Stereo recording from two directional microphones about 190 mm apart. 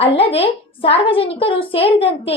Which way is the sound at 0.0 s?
30° left (ahead or behind).